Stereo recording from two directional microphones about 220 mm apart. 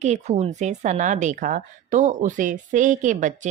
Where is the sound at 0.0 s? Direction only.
30° right (ahead or behind).